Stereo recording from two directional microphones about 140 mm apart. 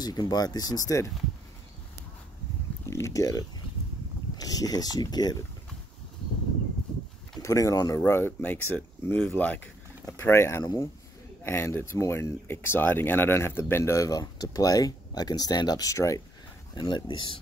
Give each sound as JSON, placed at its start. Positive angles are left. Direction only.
{"t": 0.0, "sound": "speech", "side_deg": 30}
{"t": 2.9, "sound": "speech", "side_deg": 20}
{"t": 7.4, "sound": "speech", "side_deg": 25}